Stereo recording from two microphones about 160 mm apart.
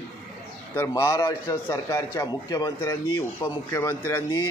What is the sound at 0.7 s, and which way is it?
A man's voice, 15° left (ahead or behind).